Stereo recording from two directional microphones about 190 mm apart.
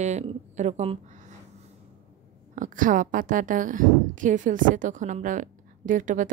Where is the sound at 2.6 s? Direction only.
45° right (ahead or behind).